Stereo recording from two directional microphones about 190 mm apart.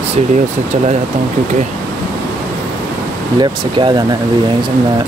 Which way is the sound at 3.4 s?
25° right (ahead or behind).